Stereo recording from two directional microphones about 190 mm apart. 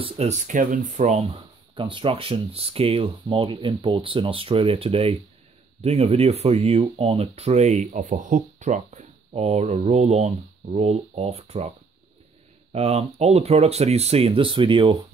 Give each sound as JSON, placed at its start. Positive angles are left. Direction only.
{"t": 0.0, "sound": "speech", "side_deg": -35}
{"t": 12.7, "sound": "speech", "side_deg": -35}